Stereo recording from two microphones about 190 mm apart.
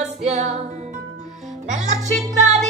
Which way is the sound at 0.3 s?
35° right (ahead or behind).